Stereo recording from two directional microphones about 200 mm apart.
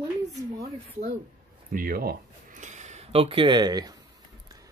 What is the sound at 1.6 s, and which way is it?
Speech, 45° right (ahead or behind).